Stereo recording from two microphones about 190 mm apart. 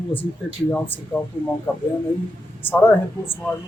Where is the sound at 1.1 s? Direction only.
10° left (ahead or behind).